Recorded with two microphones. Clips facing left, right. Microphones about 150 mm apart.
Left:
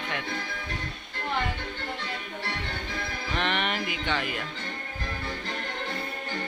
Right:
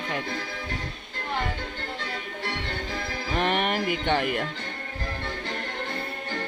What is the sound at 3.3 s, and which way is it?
Speech, 45° right (ahead or behind).